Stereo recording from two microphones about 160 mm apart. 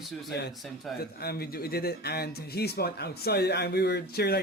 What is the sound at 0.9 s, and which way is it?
Speech, 75° left (ahead or behind).